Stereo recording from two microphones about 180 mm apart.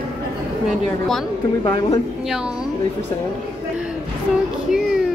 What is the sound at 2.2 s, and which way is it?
Speech, 5° right (ahead or behind).